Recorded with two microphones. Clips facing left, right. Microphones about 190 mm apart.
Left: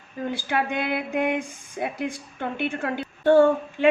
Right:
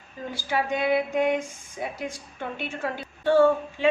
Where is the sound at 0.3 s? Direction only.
60° left (ahead or behind).